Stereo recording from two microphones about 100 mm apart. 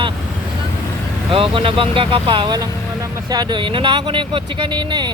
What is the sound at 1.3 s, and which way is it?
Speech, 60° right (ahead or behind).